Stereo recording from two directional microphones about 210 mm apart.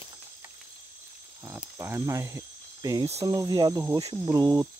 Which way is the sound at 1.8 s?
10° right (ahead or behind).